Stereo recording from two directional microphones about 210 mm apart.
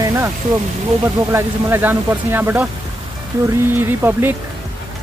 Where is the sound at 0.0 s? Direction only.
15° right (ahead or behind).